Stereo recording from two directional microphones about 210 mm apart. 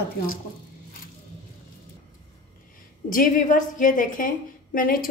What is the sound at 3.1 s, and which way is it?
A woman's voice, 40° left (ahead or behind).